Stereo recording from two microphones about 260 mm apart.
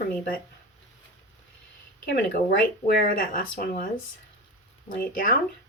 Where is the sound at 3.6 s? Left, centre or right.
Left.